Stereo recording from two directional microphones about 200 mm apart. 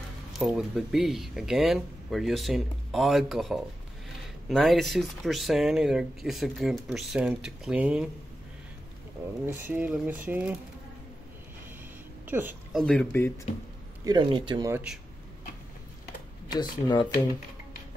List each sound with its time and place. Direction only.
0.3 s speech: centre (ahead or behind)
9.5 s speech: 10° right (ahead or behind)
12.3 s a woman's voice: 10° right (ahead or behind)
12.8 s speech: 5° left (ahead or behind)
14.0 s speech: 25° right (ahead or behind)
14.7 s speech: 5° right (ahead or behind)
16.4 s speech: 20° left (ahead or behind)